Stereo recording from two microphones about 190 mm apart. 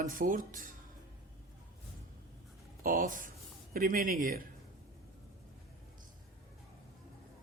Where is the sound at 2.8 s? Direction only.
45° right (ahead or behind).